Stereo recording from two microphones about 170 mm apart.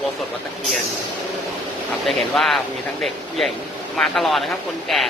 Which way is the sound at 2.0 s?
Centre (ahead or behind).